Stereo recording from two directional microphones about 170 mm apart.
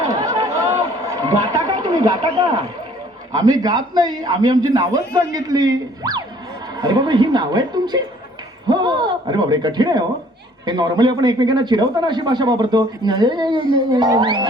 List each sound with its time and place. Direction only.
0.0 s chatter: 20° right (ahead or behind)
3.3 s a man's voice: 20° right (ahead or behind)